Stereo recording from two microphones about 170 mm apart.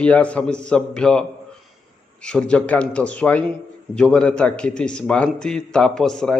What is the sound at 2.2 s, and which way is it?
A man's voice, 5° left (ahead or behind).